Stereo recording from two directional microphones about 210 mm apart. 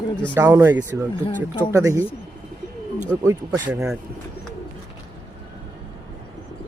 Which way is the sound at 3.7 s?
15° right (ahead or behind).